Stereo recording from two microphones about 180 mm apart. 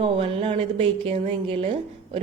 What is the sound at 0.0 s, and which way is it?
A woman's voice, 30° right (ahead or behind).